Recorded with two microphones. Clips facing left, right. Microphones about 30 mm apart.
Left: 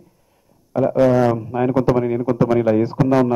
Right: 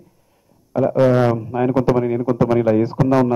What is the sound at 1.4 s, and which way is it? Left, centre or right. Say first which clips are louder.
Speech: even; centre.